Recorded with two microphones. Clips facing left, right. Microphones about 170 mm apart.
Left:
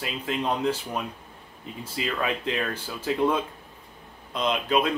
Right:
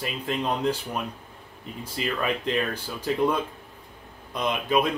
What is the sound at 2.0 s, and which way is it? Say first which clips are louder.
Speech: right 1 dB; centre (ahead or behind).